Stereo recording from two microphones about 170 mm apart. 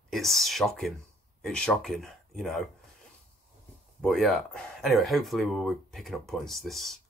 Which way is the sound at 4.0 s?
5° left (ahead or behind).